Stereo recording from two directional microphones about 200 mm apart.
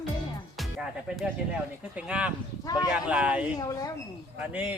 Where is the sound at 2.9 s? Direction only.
5° right (ahead or behind).